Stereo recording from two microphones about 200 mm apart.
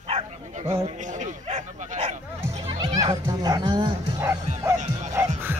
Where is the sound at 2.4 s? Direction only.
15° right (ahead or behind).